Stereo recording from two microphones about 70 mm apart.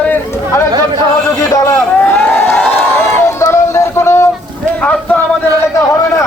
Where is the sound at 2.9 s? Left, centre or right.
Left.